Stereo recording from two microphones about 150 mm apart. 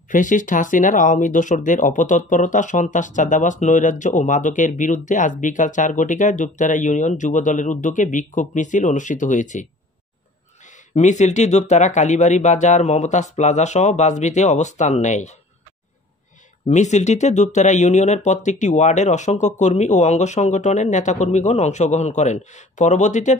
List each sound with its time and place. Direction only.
0.1 s speech: 60° left (ahead or behind)
11.0 s speech: 50° left (ahead or behind)
16.6 s speech: 50° left (ahead or behind)